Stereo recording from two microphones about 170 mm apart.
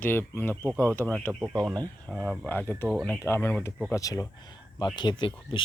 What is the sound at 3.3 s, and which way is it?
Speech, 15° left (ahead or behind).